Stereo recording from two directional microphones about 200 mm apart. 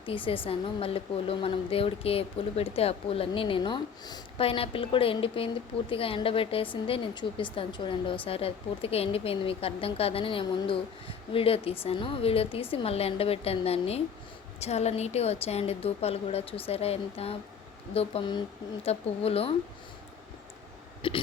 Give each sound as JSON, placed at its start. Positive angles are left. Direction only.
{"t": 0.0, "sound": "a woman's voice", "side_deg": 25}
{"t": 21.0, "sound": "speech", "side_deg": 25}